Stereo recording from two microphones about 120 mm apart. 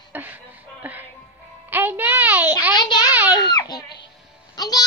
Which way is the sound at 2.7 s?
35° left (ahead or behind).